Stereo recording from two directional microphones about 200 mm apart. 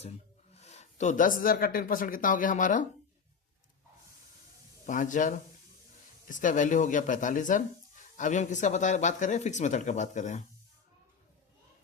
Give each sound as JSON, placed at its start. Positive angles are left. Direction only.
{"t": 0.5, "sound": "speech", "side_deg": 35}
{"t": 4.9, "sound": "speech", "side_deg": 40}